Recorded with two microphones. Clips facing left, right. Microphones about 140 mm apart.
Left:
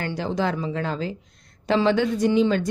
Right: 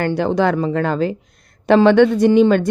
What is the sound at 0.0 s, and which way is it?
Speech, 60° right (ahead or behind).